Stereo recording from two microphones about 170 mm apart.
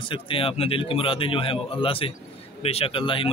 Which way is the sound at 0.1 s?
30° left (ahead or behind).